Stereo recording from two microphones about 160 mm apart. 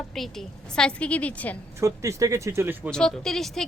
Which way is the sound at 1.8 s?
20° right (ahead or behind).